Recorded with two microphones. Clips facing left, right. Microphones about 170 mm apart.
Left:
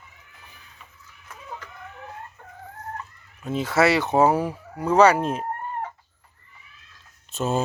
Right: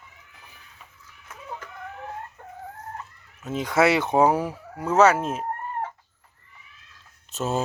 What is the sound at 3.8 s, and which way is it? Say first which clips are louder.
Speech: even; 20° right (ahead or behind).